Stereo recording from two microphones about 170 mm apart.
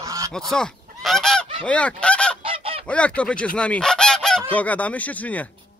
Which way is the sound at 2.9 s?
5° left (ahead or behind).